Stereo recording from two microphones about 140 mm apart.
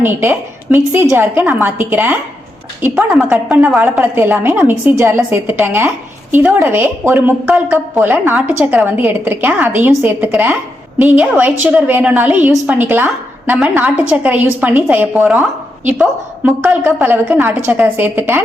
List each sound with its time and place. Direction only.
0.0 s a woman's voice: 15° right (ahead or behind)